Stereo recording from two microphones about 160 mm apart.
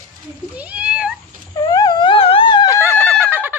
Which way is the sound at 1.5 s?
25° left (ahead or behind).